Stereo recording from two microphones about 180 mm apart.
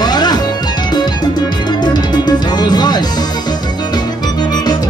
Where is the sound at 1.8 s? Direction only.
25° left (ahead or behind).